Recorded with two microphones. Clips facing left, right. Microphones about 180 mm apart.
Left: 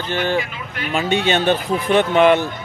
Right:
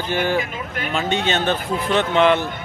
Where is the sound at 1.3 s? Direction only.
15° left (ahead or behind).